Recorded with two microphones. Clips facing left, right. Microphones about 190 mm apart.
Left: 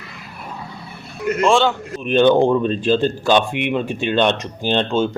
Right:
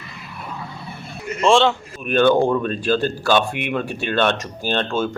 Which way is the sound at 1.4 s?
Centre (ahead or behind).